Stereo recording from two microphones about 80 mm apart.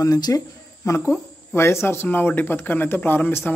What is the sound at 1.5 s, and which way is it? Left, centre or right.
Speech, left.